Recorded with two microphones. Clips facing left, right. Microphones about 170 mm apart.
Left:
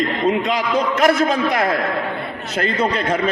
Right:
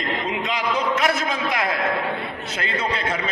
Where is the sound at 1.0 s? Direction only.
50° left (ahead or behind).